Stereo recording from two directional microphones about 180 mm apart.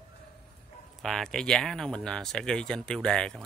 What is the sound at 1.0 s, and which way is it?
Speech, centre (ahead or behind).